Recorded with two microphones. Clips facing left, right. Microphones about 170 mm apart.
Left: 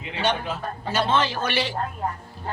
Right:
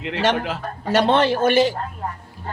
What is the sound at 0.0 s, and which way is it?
A man's voice, 90° right.